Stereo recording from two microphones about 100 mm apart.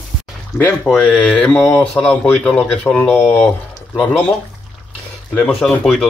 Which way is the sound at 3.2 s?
25° left (ahead or behind).